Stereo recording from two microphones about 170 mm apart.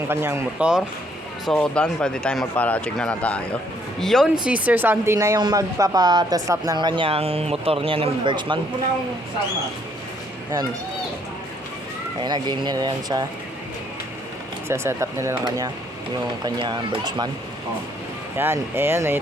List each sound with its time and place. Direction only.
0.1 s speech: 15° right (ahead or behind)
1.5 s speech: 5° left (ahead or behind); by 8.5 s 30° right (ahead or behind)
12.2 s speech: 25° right (ahead or behind)
14.7 s speech: 15° right (ahead or behind)
18.3 s speech: 15° right (ahead or behind)